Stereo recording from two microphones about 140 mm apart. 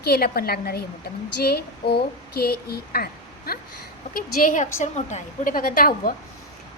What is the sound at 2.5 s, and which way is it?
A woman's voice, 90° left.